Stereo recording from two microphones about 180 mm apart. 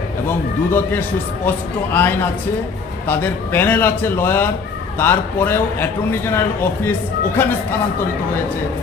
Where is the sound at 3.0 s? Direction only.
10° left (ahead or behind).